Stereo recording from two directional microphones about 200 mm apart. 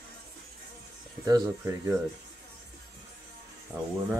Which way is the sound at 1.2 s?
15° right (ahead or behind).